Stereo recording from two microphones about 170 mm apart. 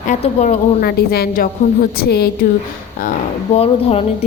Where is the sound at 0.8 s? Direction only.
70° left (ahead or behind).